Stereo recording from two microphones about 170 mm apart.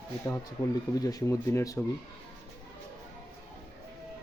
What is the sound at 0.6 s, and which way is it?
Speech, 20° left (ahead or behind).